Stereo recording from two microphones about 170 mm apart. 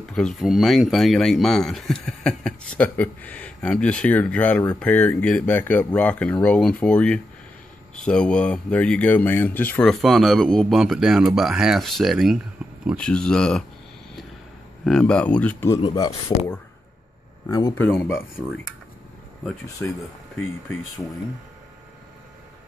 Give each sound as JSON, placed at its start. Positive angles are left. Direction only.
{"t": 0.1, "sound": "speech", "side_deg": 0}
{"t": 12.6, "sound": "a sound", "side_deg": -5}
{"t": 12.9, "sound": "speech", "side_deg": 5}
{"t": 14.9, "sound": "speech", "side_deg": 5}
{"t": 15.8, "sound": "speech", "side_deg": 25}
{"t": 17.5, "sound": "speech", "side_deg": 20}
{"t": 19.8, "sound": "speech", "side_deg": 10}